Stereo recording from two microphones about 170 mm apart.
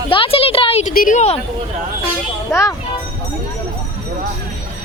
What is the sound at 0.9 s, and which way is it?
Speech, 55° left (ahead or behind).